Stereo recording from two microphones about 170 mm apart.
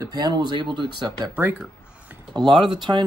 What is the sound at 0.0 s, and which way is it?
Speech, 25° right (ahead or behind).